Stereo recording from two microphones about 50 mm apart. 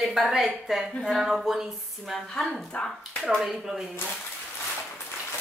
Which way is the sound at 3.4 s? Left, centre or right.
Centre.